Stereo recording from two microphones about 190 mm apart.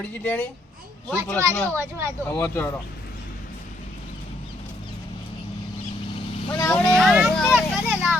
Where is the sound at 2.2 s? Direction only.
15° left (ahead or behind).